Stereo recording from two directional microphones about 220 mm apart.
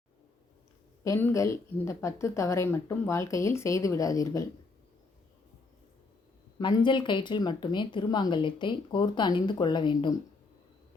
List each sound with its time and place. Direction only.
1.0 s a woman's voice: 10° left (ahead or behind)
6.6 s speech: 20° left (ahead or behind)